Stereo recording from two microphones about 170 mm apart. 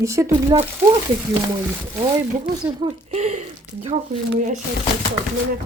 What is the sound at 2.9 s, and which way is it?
Speech, 40° right (ahead or behind).